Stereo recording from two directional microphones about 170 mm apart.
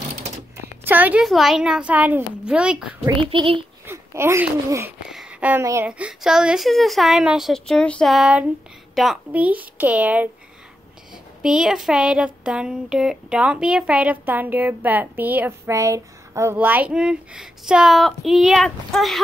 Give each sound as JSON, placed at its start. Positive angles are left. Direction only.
{"t": 0.6, "sound": "speech", "side_deg": -10}
{"t": 3.2, "sound": "a child's voice", "side_deg": -30}
{"t": 3.8, "sound": "speech", "side_deg": -15}
{"t": 5.1, "sound": "a sound", "side_deg": -5}
{"t": 5.9, "sound": "speech", "side_deg": -5}
{"t": 11.4, "sound": "speech", "side_deg": -5}